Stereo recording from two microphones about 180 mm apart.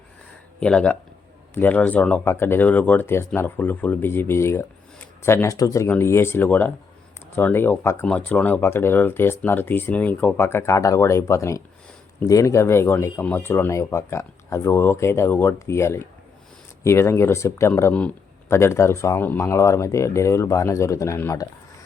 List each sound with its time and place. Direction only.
0.6 s speech: 5° left (ahead or behind)